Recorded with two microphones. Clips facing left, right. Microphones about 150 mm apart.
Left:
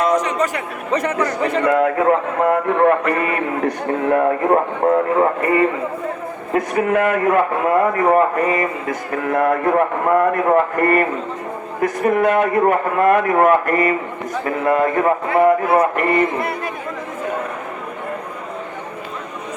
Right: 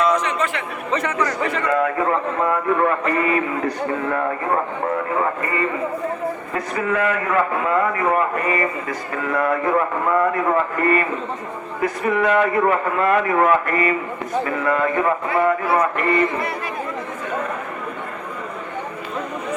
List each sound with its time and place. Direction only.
0.0 s a sound: 45° left (ahead or behind)
1.8 s a man's voice: 60° left (ahead or behind)
4.1 s a man's voice: 45° left (ahead or behind)
15.3 s a man's voice: 50° left (ahead or behind)